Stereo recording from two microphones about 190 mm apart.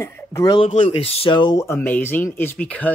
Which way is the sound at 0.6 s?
35° left (ahead or behind).